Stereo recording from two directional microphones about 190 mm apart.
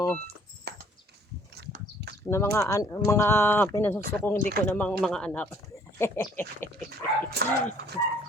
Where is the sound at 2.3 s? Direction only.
15° left (ahead or behind).